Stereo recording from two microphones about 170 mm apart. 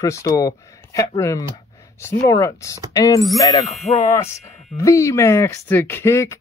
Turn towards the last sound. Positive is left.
turn(degrees=15)  # may be behind; listen again after turning